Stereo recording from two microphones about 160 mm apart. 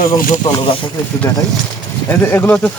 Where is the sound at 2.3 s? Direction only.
10° left (ahead or behind).